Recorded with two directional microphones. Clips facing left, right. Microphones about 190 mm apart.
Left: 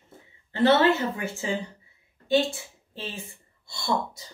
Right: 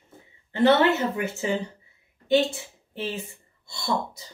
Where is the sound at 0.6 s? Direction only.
20° right (ahead or behind).